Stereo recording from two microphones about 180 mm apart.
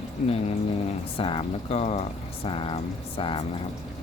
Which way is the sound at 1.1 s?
30° left (ahead or behind).